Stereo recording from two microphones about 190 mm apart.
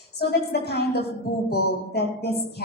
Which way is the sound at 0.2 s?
55° left (ahead or behind).